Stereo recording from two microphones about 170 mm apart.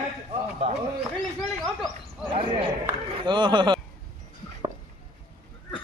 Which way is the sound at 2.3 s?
30° right (ahead or behind).